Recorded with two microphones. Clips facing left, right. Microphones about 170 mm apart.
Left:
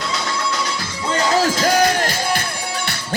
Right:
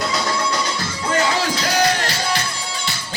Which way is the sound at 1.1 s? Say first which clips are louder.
Left 3 dB; 40° left (ahead or behind).